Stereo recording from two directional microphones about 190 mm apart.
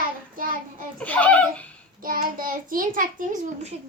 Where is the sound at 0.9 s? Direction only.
10° left (ahead or behind).